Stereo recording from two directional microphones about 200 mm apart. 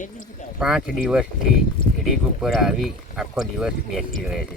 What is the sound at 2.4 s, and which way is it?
Speech, centre (ahead or behind).